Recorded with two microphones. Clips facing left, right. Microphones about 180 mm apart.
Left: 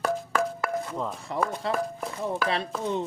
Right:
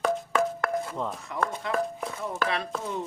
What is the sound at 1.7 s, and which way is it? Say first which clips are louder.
Speech: even; centre (ahead or behind).